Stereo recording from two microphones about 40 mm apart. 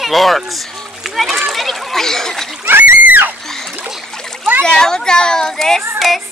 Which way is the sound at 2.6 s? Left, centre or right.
Right.